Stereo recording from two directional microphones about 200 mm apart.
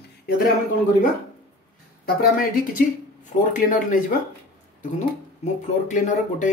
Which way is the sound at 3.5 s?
40° left (ahead or behind).